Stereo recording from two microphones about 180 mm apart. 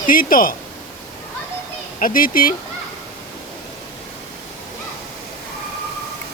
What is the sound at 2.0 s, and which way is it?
Speech, 50° left (ahead or behind).